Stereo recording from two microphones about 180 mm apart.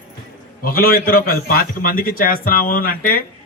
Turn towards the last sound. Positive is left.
turn(degrees=55)  # may be behind; listen again after turning